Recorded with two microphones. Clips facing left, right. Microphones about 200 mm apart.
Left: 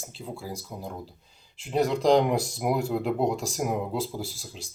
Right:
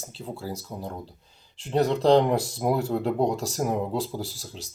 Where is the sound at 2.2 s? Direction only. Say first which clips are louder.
Right 2 dB; 10° left (ahead or behind).